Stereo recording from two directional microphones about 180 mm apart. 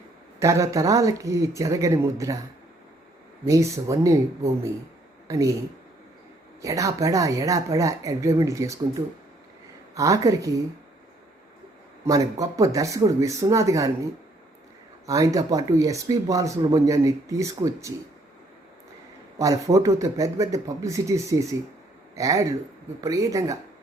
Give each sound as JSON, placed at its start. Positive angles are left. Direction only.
{"t": 0.3, "sound": "speech", "side_deg": -15}
{"t": 3.4, "sound": "speech", "side_deg": -15}
{"t": 6.6, "sound": "speech", "side_deg": -20}
{"t": 9.9, "sound": "speech", "side_deg": -20}
{"t": 12.0, "sound": "speech", "side_deg": -20}
{"t": 15.0, "sound": "speech", "side_deg": -20}
{"t": 19.4, "sound": "a man's voice", "side_deg": -20}